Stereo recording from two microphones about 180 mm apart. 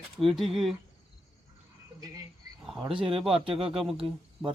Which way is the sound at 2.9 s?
30° right (ahead or behind).